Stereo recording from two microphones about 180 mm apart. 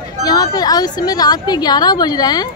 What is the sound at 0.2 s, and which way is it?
A woman's voice, 20° left (ahead or behind).